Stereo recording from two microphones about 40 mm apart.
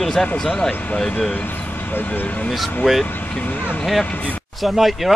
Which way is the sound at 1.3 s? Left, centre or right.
Left.